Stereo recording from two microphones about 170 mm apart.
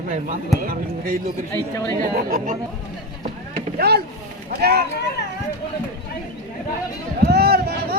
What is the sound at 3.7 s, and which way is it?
Speech, 70° right (ahead or behind).